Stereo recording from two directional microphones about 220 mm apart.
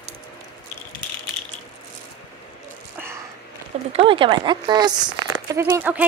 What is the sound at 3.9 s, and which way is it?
A woman's voice, 25° right (ahead or behind).